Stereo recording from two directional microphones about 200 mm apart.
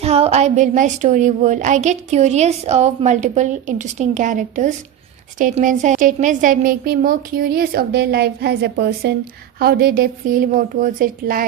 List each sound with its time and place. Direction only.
0.0 s a woman's voice: 30° right (ahead or behind)